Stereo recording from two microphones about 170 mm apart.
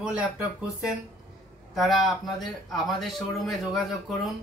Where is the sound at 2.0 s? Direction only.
Centre (ahead or behind).